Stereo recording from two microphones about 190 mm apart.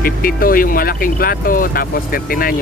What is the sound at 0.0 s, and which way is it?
Speech, 50° left (ahead or behind).